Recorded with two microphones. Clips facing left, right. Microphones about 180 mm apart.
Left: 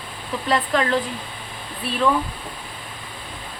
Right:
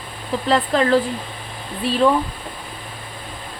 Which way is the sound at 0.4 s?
35° right (ahead or behind).